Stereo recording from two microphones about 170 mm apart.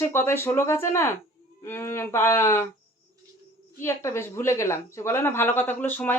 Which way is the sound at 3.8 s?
15° left (ahead or behind).